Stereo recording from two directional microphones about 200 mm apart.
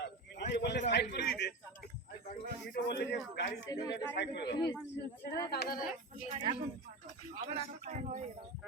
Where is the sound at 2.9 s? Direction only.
60° left (ahead or behind).